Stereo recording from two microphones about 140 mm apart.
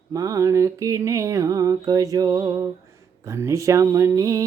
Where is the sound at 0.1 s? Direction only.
25° right (ahead or behind).